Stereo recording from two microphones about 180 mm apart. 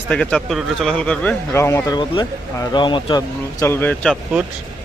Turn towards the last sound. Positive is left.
turn(degrees=5)  # may be behind; listen again after turning